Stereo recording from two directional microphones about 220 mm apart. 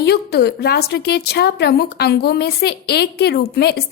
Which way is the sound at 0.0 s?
50° left (ahead or behind).